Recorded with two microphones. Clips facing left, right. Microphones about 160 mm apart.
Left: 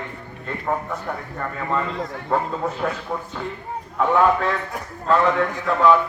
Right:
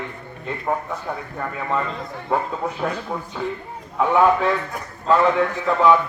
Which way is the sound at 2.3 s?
5° right (ahead or behind).